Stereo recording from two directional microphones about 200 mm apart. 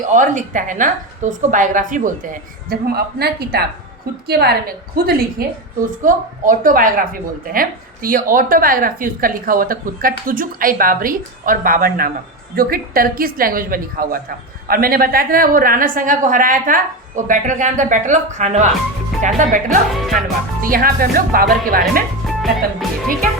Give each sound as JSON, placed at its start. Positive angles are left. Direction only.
{"t": 0.0, "sound": "a woman's voice", "side_deg": -40}
{"t": 20.0, "sound": "speech", "side_deg": 0}
{"t": 20.6, "sound": "a woman's voice", "side_deg": -45}
{"t": 22.2, "sound": "music", "side_deg": 0}